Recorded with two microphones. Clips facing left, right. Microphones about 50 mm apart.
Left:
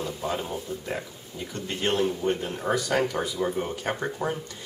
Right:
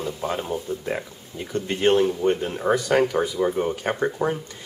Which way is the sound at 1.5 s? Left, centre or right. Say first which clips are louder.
Right 8 dB; right.